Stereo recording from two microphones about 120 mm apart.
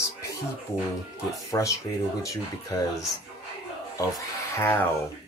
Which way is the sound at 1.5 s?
25° left (ahead or behind).